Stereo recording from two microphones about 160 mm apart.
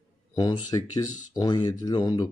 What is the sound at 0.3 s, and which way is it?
Speech, 25° left (ahead or behind).